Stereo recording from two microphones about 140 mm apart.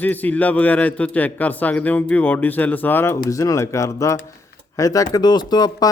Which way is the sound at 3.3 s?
25° left (ahead or behind).